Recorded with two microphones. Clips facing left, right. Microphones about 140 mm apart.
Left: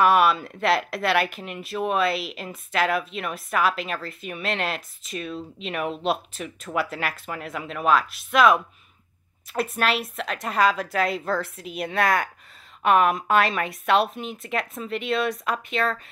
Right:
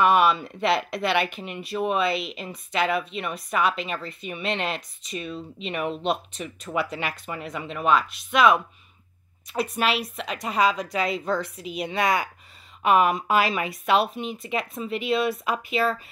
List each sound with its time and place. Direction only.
0.0 s speech: centre (ahead or behind)